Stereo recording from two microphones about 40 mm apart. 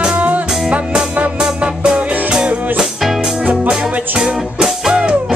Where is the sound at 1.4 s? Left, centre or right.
Right.